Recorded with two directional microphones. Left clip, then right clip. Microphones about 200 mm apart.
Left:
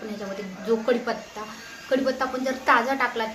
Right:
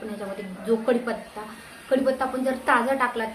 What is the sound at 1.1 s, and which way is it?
A woman's voice, centre (ahead or behind).